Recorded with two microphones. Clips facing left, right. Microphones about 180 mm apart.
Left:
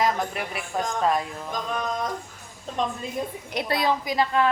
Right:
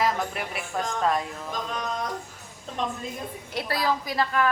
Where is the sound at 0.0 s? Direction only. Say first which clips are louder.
Left 1 dB; centre (ahead or behind).